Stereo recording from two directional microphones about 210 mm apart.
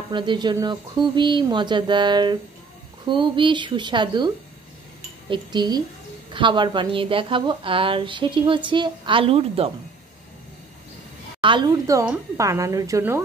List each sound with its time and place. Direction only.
0.1 s a woman's voice: 20° right (ahead or behind)
5.3 s a woman's voice: 20° right (ahead or behind)
11.4 s a woman's voice: 20° right (ahead or behind)